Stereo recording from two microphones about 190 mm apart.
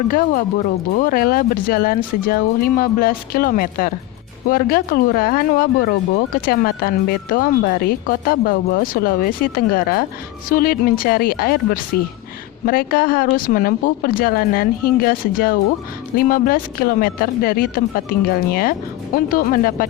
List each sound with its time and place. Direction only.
0.1 s speech: 45° left (ahead or behind)